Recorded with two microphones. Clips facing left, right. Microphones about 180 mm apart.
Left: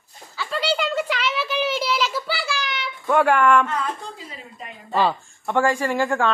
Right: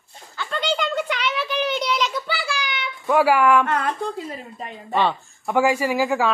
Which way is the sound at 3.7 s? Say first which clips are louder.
Right 4 dB; 65° right (ahead or behind).